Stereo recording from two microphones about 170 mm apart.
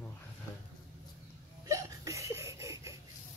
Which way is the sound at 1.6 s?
20° right (ahead or behind).